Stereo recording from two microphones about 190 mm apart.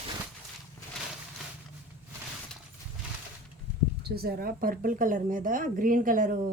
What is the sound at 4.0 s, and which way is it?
Speech, 55° right (ahead or behind).